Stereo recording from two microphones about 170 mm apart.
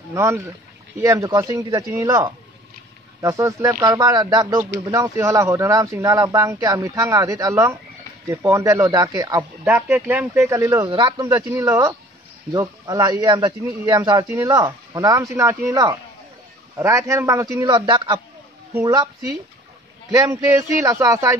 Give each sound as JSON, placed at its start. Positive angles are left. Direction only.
{"t": 0.1, "sound": "speech", "side_deg": -15}
{"t": 9.4, "sound": "speech", "side_deg": -10}
{"t": 20.2, "sound": "speech", "side_deg": -20}